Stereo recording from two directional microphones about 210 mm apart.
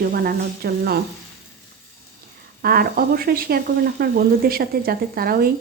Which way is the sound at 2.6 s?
45° right (ahead or behind).